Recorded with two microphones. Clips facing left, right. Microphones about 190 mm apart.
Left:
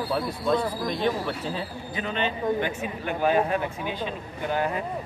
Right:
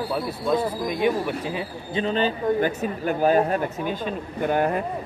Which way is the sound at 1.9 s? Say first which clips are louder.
Right 6 dB; 30° right (ahead or behind).